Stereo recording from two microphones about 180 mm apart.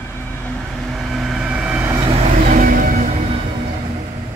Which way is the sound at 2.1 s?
35° right (ahead or behind).